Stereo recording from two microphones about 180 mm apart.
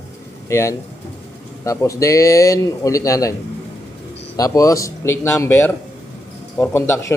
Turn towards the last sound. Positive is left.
turn(degrees=15)  # may be behind; listen again after turning